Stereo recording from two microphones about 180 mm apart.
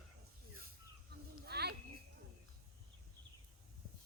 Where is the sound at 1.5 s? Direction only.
65° right (ahead or behind).